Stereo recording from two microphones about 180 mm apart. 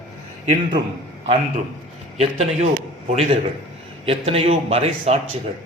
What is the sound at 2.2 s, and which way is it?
Speech, 35° right (ahead or behind).